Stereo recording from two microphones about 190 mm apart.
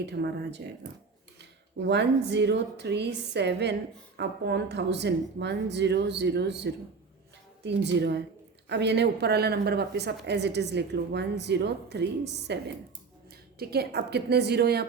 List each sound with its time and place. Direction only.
0.0 s speech: 65° right (ahead or behind)
1.9 s speech: 65° right (ahead or behind)